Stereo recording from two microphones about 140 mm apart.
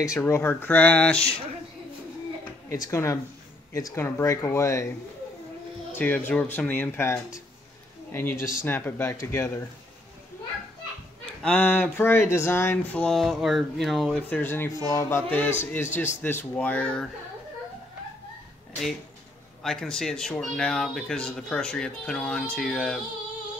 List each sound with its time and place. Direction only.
0.2 s speech: 15° left (ahead or behind)
2.7 s speech: 20° left (ahead or behind)
5.9 s speech: 15° left (ahead or behind)
11.4 s speech: 10° left (ahead or behind)
19.6 s speech: 5° left (ahead or behind)